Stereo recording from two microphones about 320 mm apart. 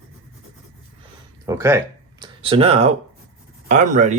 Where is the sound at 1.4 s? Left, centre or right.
Centre.